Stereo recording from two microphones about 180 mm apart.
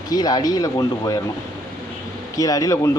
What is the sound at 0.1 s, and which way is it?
Speech, 20° left (ahead or behind).